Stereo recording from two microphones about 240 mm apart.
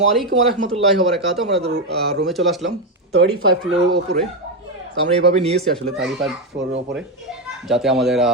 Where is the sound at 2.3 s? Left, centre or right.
Centre.